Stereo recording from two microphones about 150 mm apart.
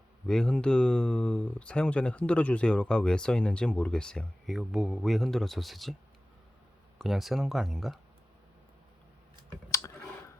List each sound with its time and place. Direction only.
0.3 s speech: 5° left (ahead or behind)
7.0 s speech: centre (ahead or behind)
9.6 s clicking: 20° left (ahead or behind)